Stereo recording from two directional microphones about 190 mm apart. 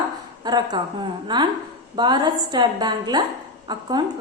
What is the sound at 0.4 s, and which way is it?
A woman's voice, 20° right (ahead or behind).